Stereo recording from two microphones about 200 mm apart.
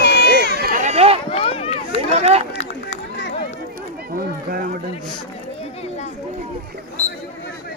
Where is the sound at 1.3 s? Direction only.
30° left (ahead or behind).